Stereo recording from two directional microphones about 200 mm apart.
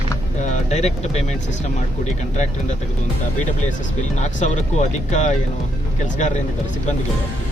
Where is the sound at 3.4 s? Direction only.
40° left (ahead or behind).